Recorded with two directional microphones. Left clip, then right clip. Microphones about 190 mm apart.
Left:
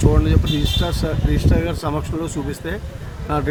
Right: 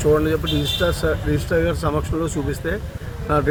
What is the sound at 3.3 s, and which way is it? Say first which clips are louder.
Speech: right 3 dB; 15° left (ahead or behind).